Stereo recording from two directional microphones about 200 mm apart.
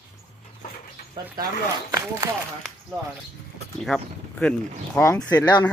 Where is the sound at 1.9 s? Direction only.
15° right (ahead or behind).